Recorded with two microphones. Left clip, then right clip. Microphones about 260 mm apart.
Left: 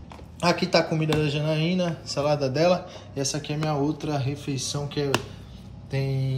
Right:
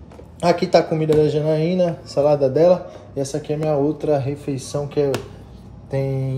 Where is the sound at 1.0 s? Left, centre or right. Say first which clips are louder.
Right 9 dB; centre.